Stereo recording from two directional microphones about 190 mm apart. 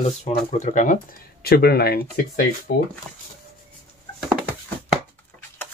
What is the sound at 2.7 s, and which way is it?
Speech, 80° left.